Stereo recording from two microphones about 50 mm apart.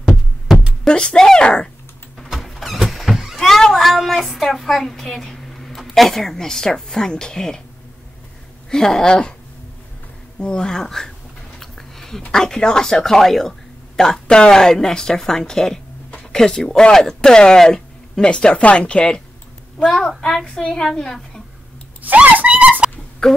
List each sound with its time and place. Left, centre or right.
0.8 s speech: centre
2.1 s vehicle: centre
3.4 s a woman's voice: centre
8.6 s speech: centre
10.4 s speech: centre
11.6 s a sound: centre
12.3 s speech: centre
14.2 s speech: centre
14.5 s speech: centre
22.0 s a sound: right
23.2 s speech: centre